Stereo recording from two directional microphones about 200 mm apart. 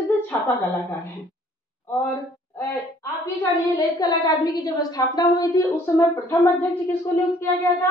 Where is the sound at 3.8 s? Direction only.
20° left (ahead or behind).